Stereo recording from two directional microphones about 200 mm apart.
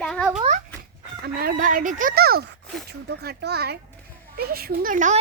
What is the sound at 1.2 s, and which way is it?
Speech, 45° right (ahead or behind).